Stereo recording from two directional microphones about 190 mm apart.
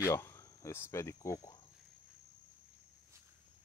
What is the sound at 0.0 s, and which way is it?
Speech, 15° left (ahead or behind).